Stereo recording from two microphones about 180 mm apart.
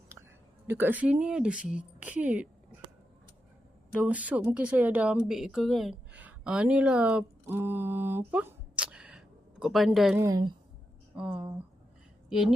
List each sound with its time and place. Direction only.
0.2 s a sound: 15° right (ahead or behind)
0.7 s speech: 10° right (ahead or behind)
3.9 s speech: 10° right (ahead or behind)
10.2 s a woman's voice: 20° right (ahead or behind)
11.1 s a woman's voice: 5° right (ahead or behind)